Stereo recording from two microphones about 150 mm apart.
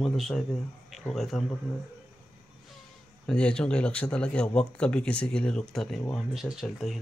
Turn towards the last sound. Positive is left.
turn(degrees=0)  # may be behind; listen again after turning